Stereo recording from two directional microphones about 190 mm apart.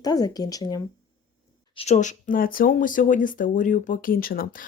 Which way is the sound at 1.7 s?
35° left (ahead or behind).